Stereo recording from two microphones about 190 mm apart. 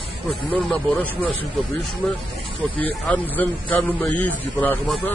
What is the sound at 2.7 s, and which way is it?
A man's voice, 10° left (ahead or behind).